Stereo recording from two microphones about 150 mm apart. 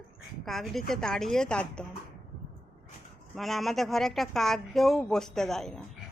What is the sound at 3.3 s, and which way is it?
Speech, centre (ahead or behind).